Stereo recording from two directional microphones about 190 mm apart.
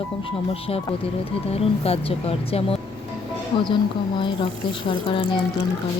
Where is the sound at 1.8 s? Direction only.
30° left (ahead or behind).